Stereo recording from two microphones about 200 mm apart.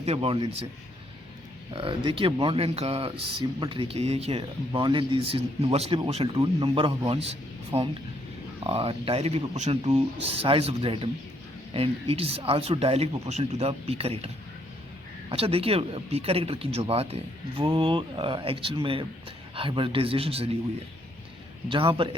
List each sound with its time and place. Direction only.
0.0 s speech: 30° right (ahead or behind)
1.7 s speech: 25° right (ahead or behind)
15.3 s speech: 30° right (ahead or behind)
21.7 s speech: 25° right (ahead or behind)